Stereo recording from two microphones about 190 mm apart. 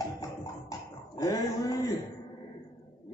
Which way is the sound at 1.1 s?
20° left (ahead or behind).